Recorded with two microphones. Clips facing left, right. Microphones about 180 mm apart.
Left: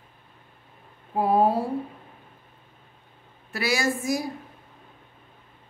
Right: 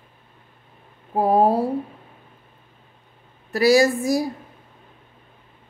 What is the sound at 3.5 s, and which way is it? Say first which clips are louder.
Speech: right 10 dB; 35° right (ahead or behind).